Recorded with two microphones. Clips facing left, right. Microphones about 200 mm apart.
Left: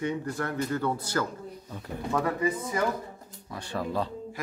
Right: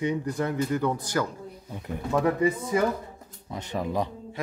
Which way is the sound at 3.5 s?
20° right (ahead or behind).